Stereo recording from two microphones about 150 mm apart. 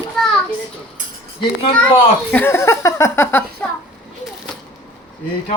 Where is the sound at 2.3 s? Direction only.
15° left (ahead or behind).